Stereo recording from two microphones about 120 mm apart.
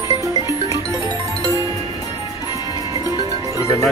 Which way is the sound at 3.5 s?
25° left (ahead or behind).